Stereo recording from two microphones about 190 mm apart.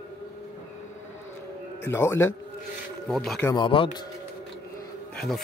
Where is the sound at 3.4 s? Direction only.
25° left (ahead or behind).